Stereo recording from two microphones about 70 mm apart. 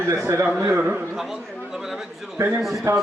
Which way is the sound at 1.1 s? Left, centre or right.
Centre.